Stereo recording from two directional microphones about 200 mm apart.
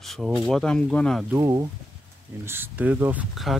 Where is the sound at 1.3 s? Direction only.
15° right (ahead or behind).